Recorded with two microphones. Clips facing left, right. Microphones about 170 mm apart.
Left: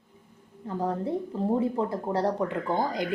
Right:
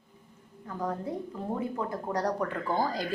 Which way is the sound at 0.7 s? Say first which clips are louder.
Left 5 dB; 30° left (ahead or behind).